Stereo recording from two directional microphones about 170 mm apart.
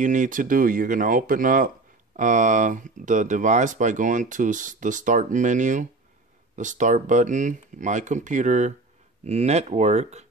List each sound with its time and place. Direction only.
0.0 s speech: 50° right (ahead or behind)